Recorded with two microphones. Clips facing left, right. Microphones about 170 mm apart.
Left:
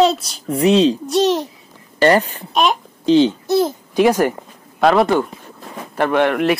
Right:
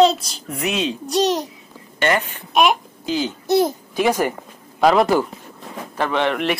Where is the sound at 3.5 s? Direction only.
15° right (ahead or behind).